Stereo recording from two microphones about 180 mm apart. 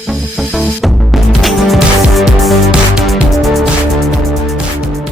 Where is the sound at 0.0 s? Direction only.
Centre (ahead or behind).